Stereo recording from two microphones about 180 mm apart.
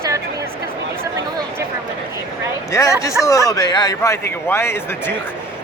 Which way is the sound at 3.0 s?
15° left (ahead or behind).